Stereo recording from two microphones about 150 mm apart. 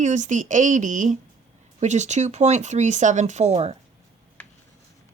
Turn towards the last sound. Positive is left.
turn(degrees=-45)  # may be behind; listen again after turning